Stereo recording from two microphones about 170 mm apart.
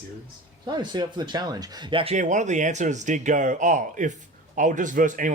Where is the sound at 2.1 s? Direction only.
45° right (ahead or behind).